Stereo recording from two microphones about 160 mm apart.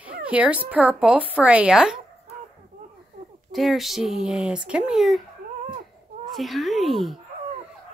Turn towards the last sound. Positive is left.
turn(degrees=0)  # may be behind; listen again after turning